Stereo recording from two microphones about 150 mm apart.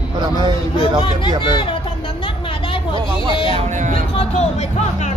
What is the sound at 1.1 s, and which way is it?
Speech, 30° left (ahead or behind).